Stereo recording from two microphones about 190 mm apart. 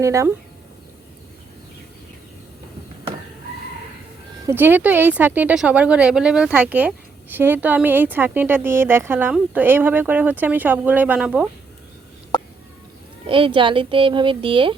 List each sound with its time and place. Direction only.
0.0 s speech: 15° right (ahead or behind)
4.4 s speech: 10° right (ahead or behind)
13.2 s speech: 25° right (ahead or behind)